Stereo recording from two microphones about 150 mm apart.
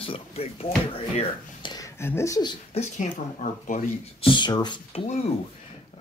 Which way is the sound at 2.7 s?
55° left (ahead or behind).